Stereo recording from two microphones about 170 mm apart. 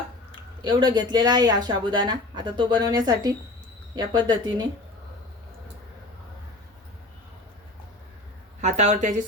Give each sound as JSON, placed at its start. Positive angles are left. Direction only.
{"t": 0.6, "sound": "speech", "side_deg": -25}
{"t": 8.6, "sound": "a woman's voice", "side_deg": -40}